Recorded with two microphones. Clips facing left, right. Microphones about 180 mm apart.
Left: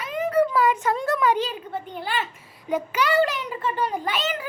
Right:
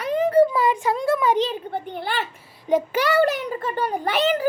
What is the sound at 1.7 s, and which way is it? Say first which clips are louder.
Speech: right 3 dB; 30° right (ahead or behind).